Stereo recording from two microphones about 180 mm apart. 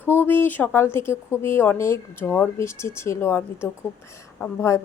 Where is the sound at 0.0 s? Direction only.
10° left (ahead or behind).